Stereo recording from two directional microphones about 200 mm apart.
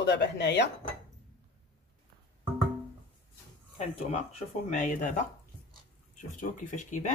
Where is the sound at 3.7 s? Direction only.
30° left (ahead or behind).